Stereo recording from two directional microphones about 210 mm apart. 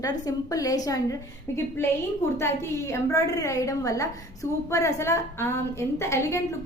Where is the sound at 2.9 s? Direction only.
15° left (ahead or behind).